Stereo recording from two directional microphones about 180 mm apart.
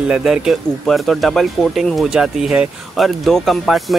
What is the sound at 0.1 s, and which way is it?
Speech, 5° right (ahead or behind).